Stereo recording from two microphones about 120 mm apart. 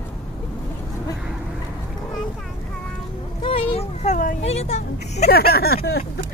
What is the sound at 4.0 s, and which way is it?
Speech, 65° left (ahead or behind).